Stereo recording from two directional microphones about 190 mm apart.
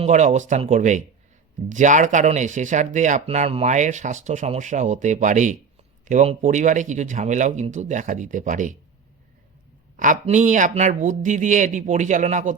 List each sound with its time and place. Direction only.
0.0 s speech: 40° right (ahead or behind)
10.0 s speech: 40° right (ahead or behind)